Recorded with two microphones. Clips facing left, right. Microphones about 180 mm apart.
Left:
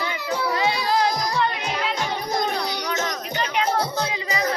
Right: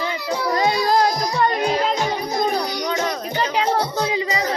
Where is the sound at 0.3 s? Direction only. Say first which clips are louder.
Right 3 dB; 40° right (ahead or behind).